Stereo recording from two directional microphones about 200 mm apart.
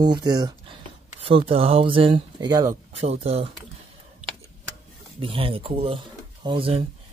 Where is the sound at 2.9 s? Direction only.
30° right (ahead or behind).